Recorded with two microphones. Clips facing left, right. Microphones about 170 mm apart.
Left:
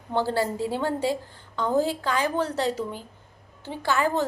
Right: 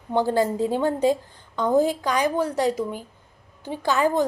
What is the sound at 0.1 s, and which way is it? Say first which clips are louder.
A woman's voice: right 4 dB; 15° right (ahead or behind).